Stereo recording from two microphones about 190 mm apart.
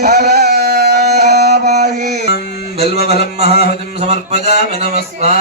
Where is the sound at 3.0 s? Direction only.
60° left (ahead or behind).